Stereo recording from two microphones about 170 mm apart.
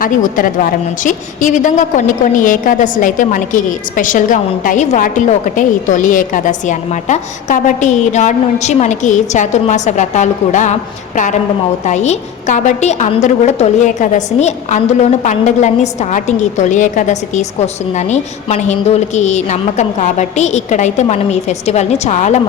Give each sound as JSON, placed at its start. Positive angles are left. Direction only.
{"t": 0.0, "sound": "a woman's voice", "side_deg": 55}